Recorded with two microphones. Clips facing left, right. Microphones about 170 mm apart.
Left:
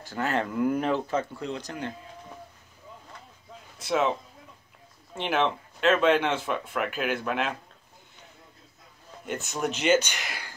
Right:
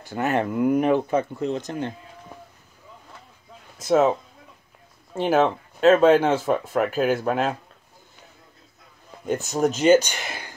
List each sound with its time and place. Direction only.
0.1 s speech: 15° right (ahead or behind)
3.7 s speech: 40° right (ahead or behind)
5.1 s speech: 40° right (ahead or behind)
9.2 s speech: 40° right (ahead or behind)